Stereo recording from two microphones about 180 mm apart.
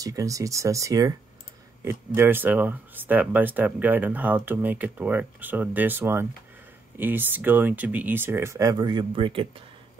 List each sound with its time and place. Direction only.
0.0 s speech: 20° right (ahead or behind)